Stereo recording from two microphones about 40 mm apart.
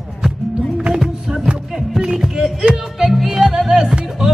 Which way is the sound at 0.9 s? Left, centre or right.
Centre.